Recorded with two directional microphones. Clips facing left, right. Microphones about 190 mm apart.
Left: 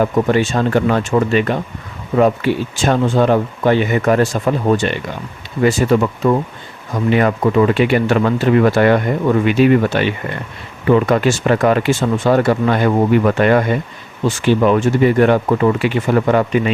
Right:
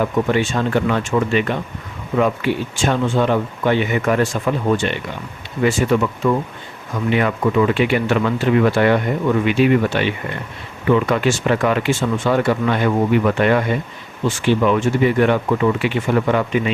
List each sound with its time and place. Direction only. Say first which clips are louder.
0.0 s speech: left 3 dB; 40° left (ahead or behind)